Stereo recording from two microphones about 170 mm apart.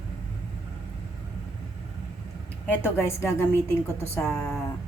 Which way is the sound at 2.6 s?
15° left (ahead or behind).